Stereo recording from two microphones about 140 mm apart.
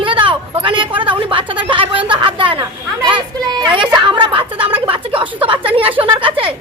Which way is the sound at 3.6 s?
35° right (ahead or behind).